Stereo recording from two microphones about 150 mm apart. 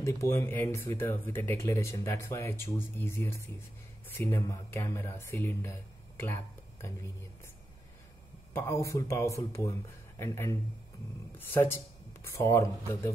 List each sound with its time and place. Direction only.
0.0 s speech: 20° left (ahead or behind)
8.5 s speech: 20° left (ahead or behind)